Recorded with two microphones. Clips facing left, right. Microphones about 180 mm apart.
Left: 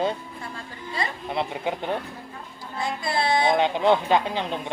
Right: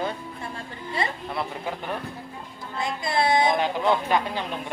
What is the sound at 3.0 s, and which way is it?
Music, 20° right (ahead or behind).